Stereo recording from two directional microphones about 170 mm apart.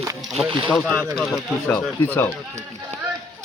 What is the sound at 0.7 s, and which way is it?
Speech, centre (ahead or behind).